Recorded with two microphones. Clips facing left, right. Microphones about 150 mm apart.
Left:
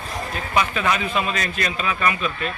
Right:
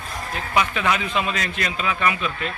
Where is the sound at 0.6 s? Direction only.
15° right (ahead or behind).